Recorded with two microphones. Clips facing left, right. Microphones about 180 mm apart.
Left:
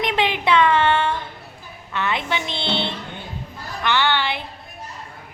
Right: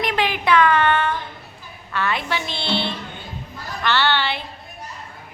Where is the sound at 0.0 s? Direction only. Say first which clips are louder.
Left 1 dB; 20° left (ahead or behind).